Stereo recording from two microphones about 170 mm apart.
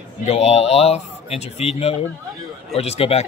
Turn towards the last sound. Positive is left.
turn(degrees=40)  # may be behind; listen again after turning